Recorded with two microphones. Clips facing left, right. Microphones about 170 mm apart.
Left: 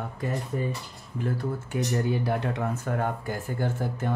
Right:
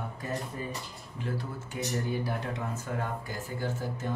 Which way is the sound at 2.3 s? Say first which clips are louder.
Left 6 dB; 65° left (ahead or behind).